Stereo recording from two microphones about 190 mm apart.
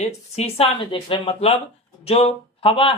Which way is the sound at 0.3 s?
30° left (ahead or behind).